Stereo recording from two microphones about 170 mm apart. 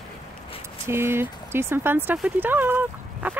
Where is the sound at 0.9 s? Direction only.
15° right (ahead or behind).